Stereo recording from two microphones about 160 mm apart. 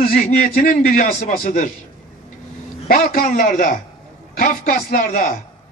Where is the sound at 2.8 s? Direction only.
60° left (ahead or behind).